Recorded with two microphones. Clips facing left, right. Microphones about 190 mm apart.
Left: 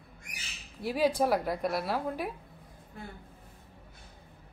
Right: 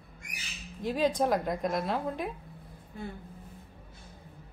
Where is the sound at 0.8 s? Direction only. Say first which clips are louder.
Even; 10° left (ahead or behind).